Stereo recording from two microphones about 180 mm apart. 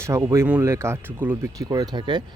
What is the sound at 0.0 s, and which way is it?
Speech, 15° right (ahead or behind).